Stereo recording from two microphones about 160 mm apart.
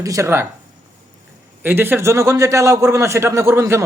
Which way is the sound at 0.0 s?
20° right (ahead or behind).